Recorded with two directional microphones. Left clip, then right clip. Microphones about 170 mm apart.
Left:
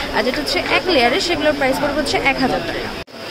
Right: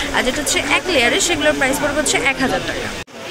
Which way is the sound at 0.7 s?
15° left (ahead or behind).